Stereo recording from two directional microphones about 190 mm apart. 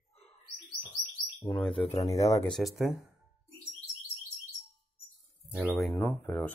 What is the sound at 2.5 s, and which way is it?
Speech, centre (ahead or behind).